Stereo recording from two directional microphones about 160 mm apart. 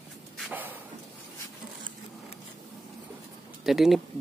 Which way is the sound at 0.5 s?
15° right (ahead or behind).